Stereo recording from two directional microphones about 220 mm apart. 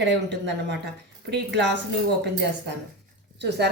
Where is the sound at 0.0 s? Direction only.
55° right (ahead or behind).